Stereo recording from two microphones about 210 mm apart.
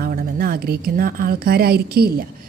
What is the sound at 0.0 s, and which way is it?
A woman's voice, 45° right (ahead or behind).